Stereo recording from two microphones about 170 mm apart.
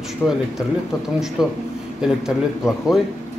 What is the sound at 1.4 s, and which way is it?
A man's voice, 5° right (ahead or behind).